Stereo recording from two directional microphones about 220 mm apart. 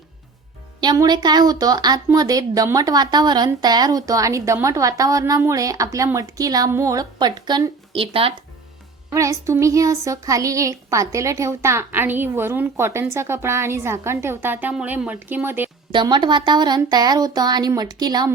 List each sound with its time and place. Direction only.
0.8 s speech: 20° right (ahead or behind)
9.0 s speech: 15° right (ahead or behind)
15.9 s speech: 20° right (ahead or behind)